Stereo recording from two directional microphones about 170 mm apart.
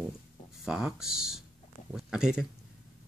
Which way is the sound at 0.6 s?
5° right (ahead or behind).